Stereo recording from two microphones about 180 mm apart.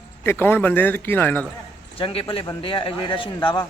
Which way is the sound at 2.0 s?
30° left (ahead or behind).